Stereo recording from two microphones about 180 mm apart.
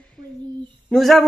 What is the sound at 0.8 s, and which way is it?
Speech, centre (ahead or behind).